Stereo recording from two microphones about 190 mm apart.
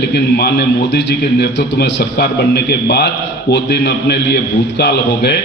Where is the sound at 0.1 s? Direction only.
60° left (ahead or behind).